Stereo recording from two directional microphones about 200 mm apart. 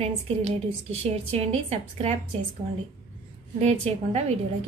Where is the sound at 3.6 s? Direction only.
30° right (ahead or behind).